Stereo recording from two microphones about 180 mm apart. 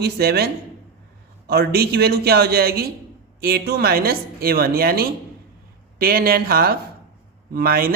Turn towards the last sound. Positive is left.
turn(degrees=-55)  # may be behind; listen again after turning